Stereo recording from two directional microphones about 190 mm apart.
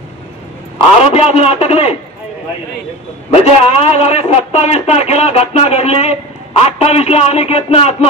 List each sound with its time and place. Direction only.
1.1 s a man's voice: 30° left (ahead or behind)
3.3 s a man's voice: 30° left (ahead or behind)